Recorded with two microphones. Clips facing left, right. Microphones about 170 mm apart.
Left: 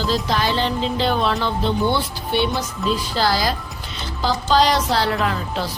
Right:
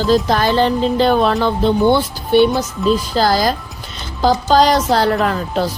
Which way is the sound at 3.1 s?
45° right (ahead or behind).